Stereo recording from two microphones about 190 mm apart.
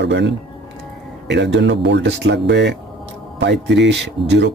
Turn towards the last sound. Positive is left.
turn(degrees=-65)  # may be behind; listen again after turning